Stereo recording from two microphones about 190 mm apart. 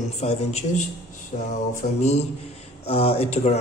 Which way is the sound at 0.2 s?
35° left (ahead or behind).